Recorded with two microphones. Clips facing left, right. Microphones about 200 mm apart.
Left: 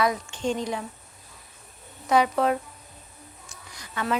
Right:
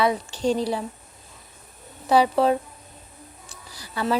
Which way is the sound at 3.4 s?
35° right (ahead or behind).